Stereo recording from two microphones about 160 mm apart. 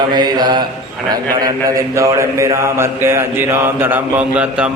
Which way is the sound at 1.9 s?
20° right (ahead or behind).